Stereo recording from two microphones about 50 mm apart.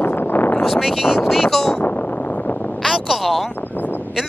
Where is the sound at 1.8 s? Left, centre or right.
Left.